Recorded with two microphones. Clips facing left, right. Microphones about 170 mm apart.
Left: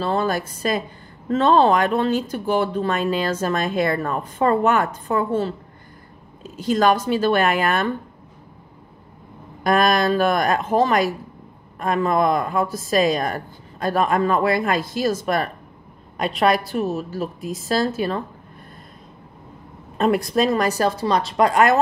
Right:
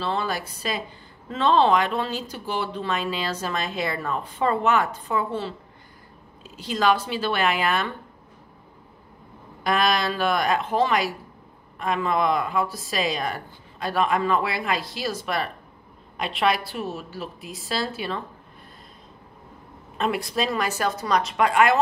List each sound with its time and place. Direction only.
0.0 s speech: 45° left (ahead or behind)
9.6 s speech: 45° left (ahead or behind)
20.0 s speech: 45° left (ahead or behind)